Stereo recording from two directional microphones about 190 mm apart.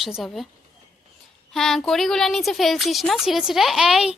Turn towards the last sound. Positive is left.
turn(degrees=-5)  # may be behind; listen again after turning